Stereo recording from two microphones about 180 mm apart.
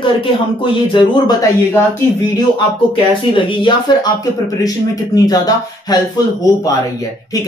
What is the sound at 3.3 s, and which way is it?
Speech, 30° left (ahead or behind).